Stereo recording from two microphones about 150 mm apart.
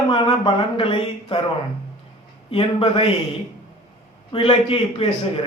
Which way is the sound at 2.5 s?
40° left (ahead or behind).